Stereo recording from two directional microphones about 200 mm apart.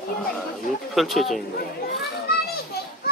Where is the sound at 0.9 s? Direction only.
Centre (ahead or behind).